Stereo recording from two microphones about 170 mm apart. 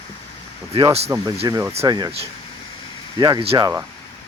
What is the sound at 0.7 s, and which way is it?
Speech, 35° right (ahead or behind).